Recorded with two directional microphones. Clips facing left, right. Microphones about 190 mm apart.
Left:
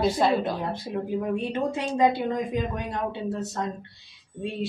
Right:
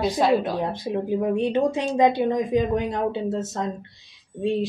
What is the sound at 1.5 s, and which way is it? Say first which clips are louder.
Speech: right 5 dB; 20° right (ahead or behind).